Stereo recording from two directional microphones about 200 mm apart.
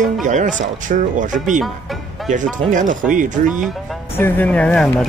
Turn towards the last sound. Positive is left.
turn(degrees=5)  # may be behind; listen again after turning